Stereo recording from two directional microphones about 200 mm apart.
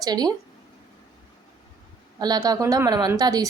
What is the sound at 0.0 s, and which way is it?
Speech, 20° right (ahead or behind).